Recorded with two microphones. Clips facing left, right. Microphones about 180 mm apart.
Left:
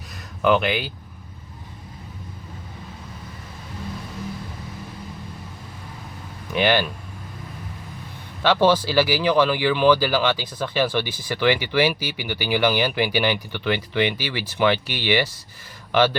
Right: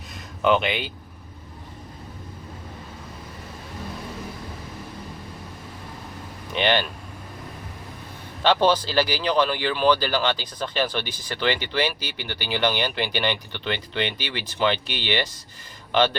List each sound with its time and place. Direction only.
0.4 s speech: centre (ahead or behind)
6.5 s speech: 5° left (ahead or behind)
8.7 s speech: 10° left (ahead or behind)